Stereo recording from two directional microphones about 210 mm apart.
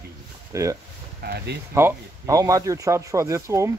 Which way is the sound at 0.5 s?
15° right (ahead or behind).